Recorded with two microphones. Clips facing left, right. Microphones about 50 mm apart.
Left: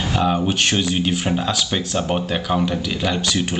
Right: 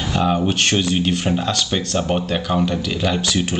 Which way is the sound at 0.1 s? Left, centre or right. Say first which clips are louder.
Right 2 dB; centre.